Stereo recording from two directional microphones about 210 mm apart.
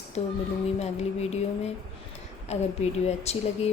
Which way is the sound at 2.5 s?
30° left (ahead or behind).